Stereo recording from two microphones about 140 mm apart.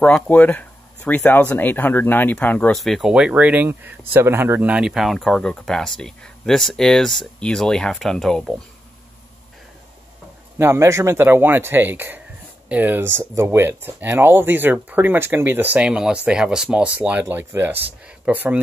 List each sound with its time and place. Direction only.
0.0 s speech: 10° left (ahead or behind)
2.7 s speech: centre (ahead or behind)
10.6 s speech: 20° right (ahead or behind)